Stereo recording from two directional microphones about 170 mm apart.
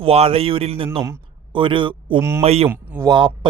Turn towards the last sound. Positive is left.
turn(degrees=-30)  # may be behind; listen again after turning